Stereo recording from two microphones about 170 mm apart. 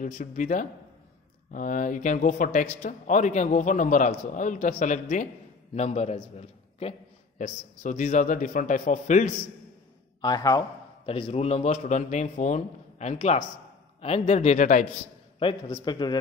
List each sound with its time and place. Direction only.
0.0 s speech: 50° left (ahead or behind)
10.2 s a man's voice: 20° left (ahead or behind)
11.1 s a man's voice: 35° left (ahead or behind)
15.7 s a man's voice: 25° left (ahead or behind)